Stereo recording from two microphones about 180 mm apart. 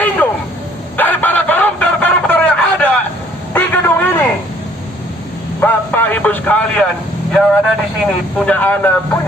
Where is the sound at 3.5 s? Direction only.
10° left (ahead or behind).